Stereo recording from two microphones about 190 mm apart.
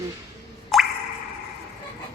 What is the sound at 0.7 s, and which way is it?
Plop, centre (ahead or behind).